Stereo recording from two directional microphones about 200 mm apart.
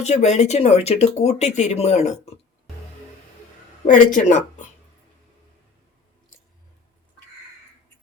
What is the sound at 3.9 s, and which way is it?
Speech, 40° left (ahead or behind).